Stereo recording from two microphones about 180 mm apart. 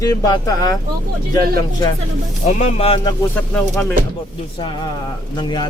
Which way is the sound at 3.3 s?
10° left (ahead or behind).